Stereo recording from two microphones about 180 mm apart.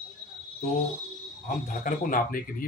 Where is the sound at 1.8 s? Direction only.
50° left (ahead or behind).